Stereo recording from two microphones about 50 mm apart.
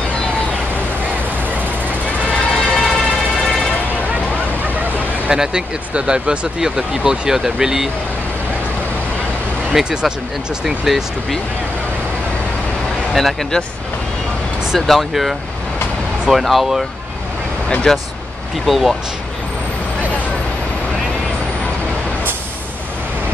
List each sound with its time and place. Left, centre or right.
2.3 s vehicle: centre
5.3 s speech: centre
9.7 s speech: centre
13.1 s speech: centre
14.9 s speech: centre
17.9 s speech: centre
18.7 s speech: centre